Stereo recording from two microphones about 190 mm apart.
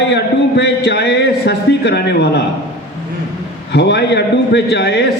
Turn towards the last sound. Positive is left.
turn(degrees=60)  # may be behind; listen again after turning